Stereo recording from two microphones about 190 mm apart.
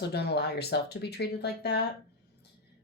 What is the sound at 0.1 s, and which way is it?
Speech, 60° left (ahead or behind).